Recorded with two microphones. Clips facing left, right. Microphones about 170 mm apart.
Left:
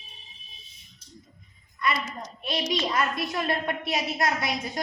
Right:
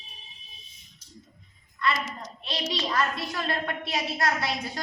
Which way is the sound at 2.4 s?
20° left (ahead or behind).